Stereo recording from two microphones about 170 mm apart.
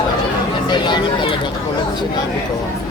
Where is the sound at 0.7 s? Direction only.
25° left (ahead or behind).